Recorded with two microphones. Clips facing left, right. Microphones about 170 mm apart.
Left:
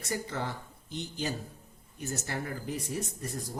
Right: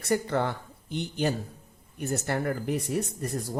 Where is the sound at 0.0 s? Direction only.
60° right (ahead or behind).